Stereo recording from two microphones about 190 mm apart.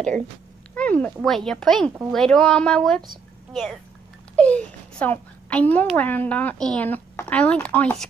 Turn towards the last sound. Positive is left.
turn(degrees=5)  # may be behind; listen again after turning